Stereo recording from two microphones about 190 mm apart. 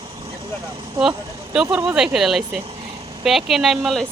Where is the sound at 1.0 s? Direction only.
5° right (ahead or behind).